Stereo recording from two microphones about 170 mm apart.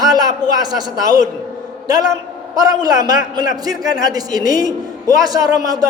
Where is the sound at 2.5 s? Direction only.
20° right (ahead or behind).